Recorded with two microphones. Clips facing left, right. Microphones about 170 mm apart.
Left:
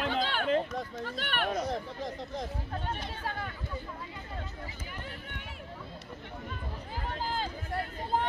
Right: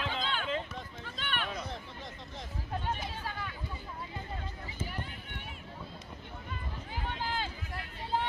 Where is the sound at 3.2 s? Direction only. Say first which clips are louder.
Left 3 dB; 50° left (ahead or behind).